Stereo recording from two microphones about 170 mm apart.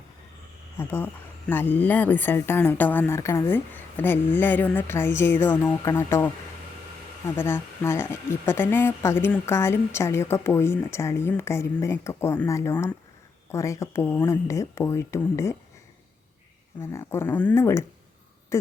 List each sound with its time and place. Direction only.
0.8 s speech: 15° left (ahead or behind)
16.8 s speech: 15° left (ahead or behind)
18.5 s a sound: 15° left (ahead or behind)